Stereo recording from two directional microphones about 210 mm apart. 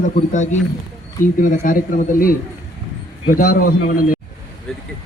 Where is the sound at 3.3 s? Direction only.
40° left (ahead or behind).